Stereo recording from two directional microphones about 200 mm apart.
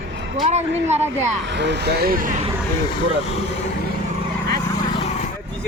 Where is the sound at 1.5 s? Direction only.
60° right (ahead or behind); by 2.4 s 45° right (ahead or behind).